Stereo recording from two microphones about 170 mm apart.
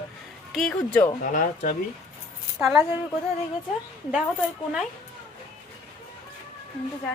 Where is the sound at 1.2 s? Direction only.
50° left (ahead or behind).